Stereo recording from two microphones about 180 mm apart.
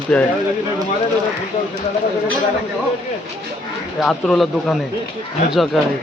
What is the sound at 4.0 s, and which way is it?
Speech, 5° left (ahead or behind).